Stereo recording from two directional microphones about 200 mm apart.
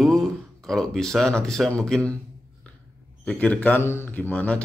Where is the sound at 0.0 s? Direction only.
Centre (ahead or behind).